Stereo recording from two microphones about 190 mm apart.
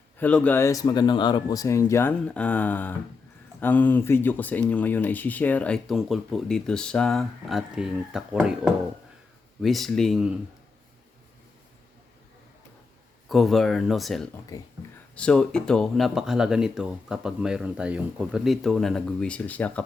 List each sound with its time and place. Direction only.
0.2 s speech: 5° left (ahead or behind)
13.2 s speech: centre (ahead or behind)
14.5 s speech: 15° left (ahead or behind)
15.1 s speech: 5° left (ahead or behind)